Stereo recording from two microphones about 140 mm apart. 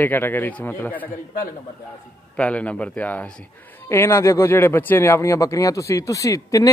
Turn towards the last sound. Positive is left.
turn(degrees=25)  # may be behind; listen again after turning